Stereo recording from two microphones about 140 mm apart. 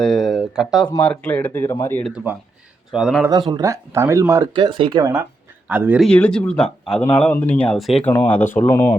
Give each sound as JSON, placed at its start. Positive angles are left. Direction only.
{"t": 0.0, "sound": "speech", "side_deg": 5}
{"t": 1.0, "sound": "speech", "side_deg": 10}
{"t": 2.9, "sound": "speech", "side_deg": -5}
{"t": 3.5, "sound": "speech", "side_deg": -25}
{"t": 4.5, "sound": "speech", "side_deg": -35}
{"t": 5.6, "sound": "speech", "side_deg": -10}
{"t": 6.0, "sound": "speech", "side_deg": 10}
{"t": 8.0, "sound": "speech", "side_deg": 10}